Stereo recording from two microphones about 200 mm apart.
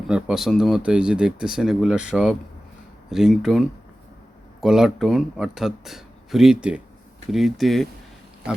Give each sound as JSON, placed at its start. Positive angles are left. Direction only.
{"t": 0.1, "sound": "speech", "side_deg": 0}
{"t": 4.6, "sound": "speech", "side_deg": 0}